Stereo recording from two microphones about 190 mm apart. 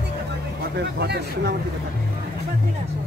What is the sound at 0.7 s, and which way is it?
Speech, 60° right (ahead or behind).